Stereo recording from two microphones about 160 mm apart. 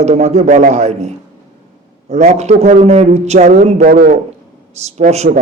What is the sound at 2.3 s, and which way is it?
A man's voice, 45° right (ahead or behind).